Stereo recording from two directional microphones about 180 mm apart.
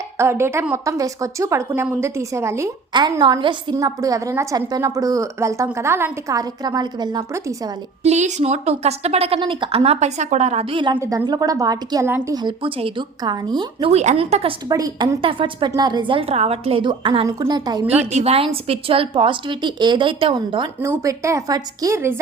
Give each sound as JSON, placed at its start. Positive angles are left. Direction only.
{"t": 0.2, "sound": "a woman's voice", "side_deg": -15}
{"t": 8.0, "sound": "a woman's voice", "side_deg": -40}
{"t": 10.9, "sound": "a woman's voice", "side_deg": -15}
{"t": 13.9, "sound": "a woman's voice", "side_deg": -40}
{"t": 14.7, "sound": "a woman's voice", "side_deg": -20}
{"t": 17.8, "sound": "a woman's voice", "side_deg": -35}
{"t": 20.8, "sound": "a woman's voice", "side_deg": -15}